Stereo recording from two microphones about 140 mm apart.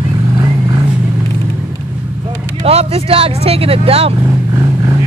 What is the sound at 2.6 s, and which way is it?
Speech, 45° right (ahead or behind).